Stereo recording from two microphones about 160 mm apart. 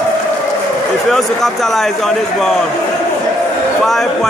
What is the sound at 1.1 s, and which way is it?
A man's voice, centre (ahead or behind).